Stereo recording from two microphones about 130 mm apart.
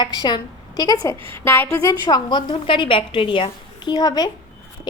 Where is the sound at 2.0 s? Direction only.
35° left (ahead or behind).